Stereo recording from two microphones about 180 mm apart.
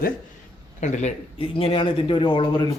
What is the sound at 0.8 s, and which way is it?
A man's voice, 40° left (ahead or behind).